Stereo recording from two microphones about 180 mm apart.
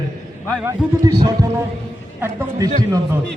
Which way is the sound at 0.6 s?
20° right (ahead or behind).